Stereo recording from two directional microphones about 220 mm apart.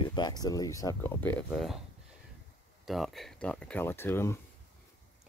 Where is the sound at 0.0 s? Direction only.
20° left (ahead or behind).